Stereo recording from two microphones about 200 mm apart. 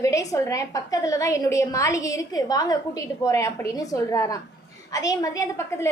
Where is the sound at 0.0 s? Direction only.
15° left (ahead or behind).